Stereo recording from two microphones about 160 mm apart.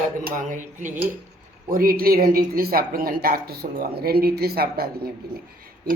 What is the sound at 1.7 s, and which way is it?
Speech, 65° right (ahead or behind).